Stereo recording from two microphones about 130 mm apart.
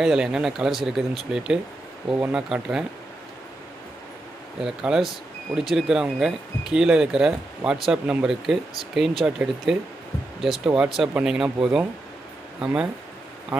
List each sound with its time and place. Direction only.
0.0 s speech: 5° right (ahead or behind)
4.6 s speech: 5° right (ahead or behind)
13.5 s speech: 20° right (ahead or behind)